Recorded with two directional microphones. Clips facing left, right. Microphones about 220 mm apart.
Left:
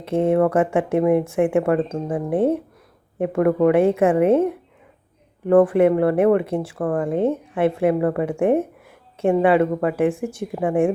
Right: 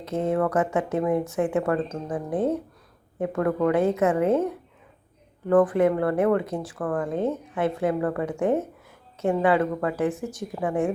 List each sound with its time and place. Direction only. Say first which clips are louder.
0.3 s speech: left 5 dB; 25° left (ahead or behind)
5.5 s speech: left 5 dB; 25° left (ahead or behind)